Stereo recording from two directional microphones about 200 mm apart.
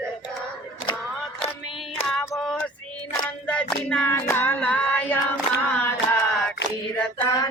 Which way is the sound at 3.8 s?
5° left (ahead or behind).